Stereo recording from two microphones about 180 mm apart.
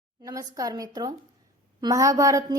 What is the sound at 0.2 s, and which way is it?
A woman's voice, 20° right (ahead or behind).